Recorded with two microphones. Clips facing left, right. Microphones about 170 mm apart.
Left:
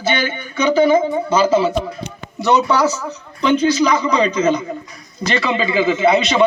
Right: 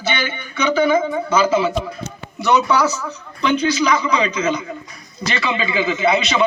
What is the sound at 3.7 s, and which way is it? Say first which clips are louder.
Speech: left 2 dB; 40° left (ahead or behind).